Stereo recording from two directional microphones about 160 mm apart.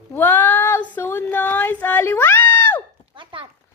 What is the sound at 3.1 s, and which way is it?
Horse, 30° right (ahead or behind).